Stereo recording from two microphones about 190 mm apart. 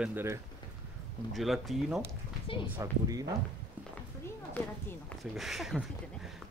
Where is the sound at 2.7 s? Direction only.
20° right (ahead or behind).